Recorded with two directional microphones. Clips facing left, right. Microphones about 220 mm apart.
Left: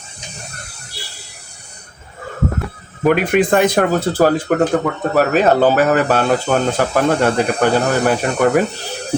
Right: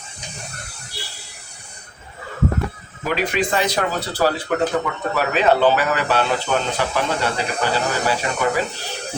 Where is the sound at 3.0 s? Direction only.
55° left (ahead or behind).